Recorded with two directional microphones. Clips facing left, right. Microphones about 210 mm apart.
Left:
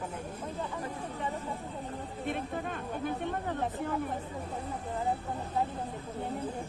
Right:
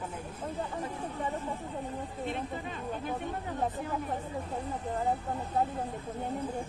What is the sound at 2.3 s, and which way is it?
Speech, 55° left (ahead or behind).